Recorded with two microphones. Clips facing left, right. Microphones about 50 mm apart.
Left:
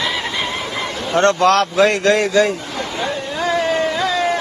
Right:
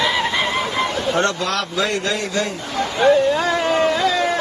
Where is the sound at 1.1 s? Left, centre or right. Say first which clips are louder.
Left 11 dB; left.